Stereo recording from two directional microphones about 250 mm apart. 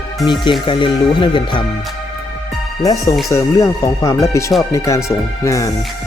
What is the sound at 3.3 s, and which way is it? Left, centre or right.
Speech, centre.